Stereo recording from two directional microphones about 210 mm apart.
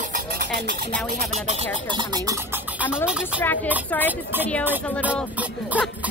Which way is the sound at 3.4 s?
10° left (ahead or behind).